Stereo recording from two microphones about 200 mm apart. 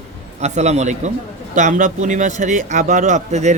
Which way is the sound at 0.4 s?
35° right (ahead or behind).